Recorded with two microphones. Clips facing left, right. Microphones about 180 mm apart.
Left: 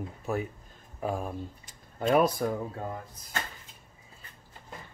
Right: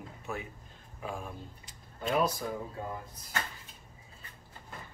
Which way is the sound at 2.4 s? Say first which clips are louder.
Left 7 dB; 60° left (ahead or behind).